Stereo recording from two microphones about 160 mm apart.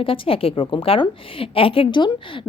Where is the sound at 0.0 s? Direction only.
35° left (ahead or behind).